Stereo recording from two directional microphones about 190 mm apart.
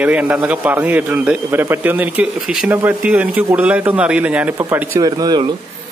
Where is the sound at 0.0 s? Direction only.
5° right (ahead or behind).